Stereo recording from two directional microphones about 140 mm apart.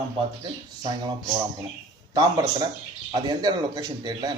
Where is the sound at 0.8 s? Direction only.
30° right (ahead or behind).